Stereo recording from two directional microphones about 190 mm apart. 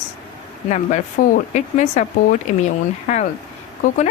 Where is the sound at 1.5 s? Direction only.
40° left (ahead or behind).